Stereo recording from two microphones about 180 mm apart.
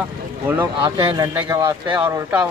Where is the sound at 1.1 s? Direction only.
25° right (ahead or behind).